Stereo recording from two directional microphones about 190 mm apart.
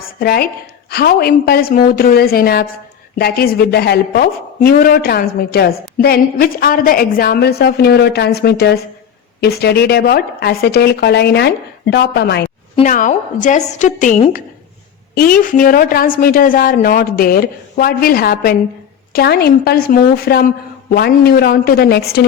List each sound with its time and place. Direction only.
0.0 s a woman's voice: 50° left (ahead or behind)
12.7 s a woman's voice: 40° left (ahead or behind)